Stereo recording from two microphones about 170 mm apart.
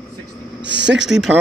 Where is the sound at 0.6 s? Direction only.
90° right.